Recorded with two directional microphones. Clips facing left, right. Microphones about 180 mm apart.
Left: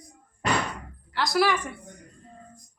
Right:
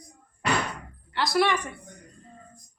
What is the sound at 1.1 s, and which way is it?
Speech, centre (ahead or behind).